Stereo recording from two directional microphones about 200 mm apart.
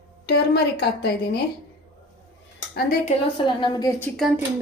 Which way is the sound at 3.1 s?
25° left (ahead or behind).